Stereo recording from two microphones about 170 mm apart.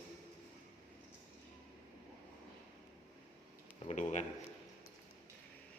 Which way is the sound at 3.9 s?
45° left (ahead or behind).